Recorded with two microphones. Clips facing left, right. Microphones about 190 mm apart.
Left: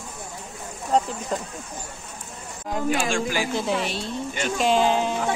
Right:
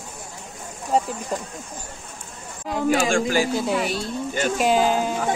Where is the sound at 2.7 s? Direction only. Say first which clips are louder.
Right 4 dB; 70° right (ahead or behind).